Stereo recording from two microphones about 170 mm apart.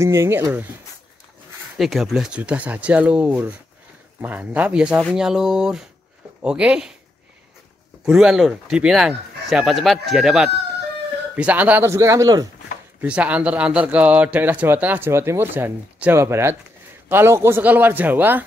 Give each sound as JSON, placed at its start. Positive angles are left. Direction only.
{"t": 0.0, "sound": "speech", "side_deg": -15}
{"t": 1.8, "sound": "speech", "side_deg": 0}
{"t": 8.0, "sound": "speech", "side_deg": -5}
{"t": 13.0, "sound": "speech", "side_deg": -5}